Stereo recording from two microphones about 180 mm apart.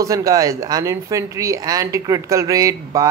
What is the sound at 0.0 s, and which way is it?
Speech, 20° right (ahead or behind).